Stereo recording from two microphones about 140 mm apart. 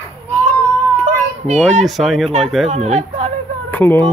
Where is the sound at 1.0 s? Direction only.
60° right (ahead or behind).